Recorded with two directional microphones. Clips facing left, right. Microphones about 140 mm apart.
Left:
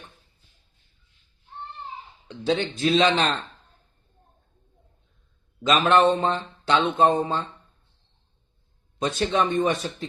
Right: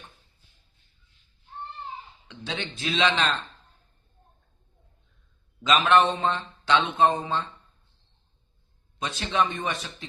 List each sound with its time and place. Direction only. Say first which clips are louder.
2.2 s speech: left 11 dB; 40° left (ahead or behind)
5.6 s speech: left 2 dB; 45° left (ahead or behind)
9.0 s speech: left 3 dB; 45° left (ahead or behind)